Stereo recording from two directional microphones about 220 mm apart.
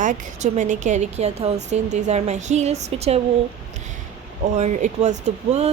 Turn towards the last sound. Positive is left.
turn(degrees=-30)  # may be behind; listen again after turning